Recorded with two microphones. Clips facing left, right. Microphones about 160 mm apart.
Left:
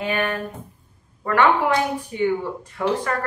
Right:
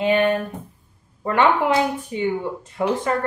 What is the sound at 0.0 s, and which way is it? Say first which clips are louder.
Speech: right 6 dB; 20° right (ahead or behind).